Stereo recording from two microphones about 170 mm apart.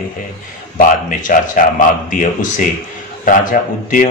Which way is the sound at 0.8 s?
50° left (ahead or behind).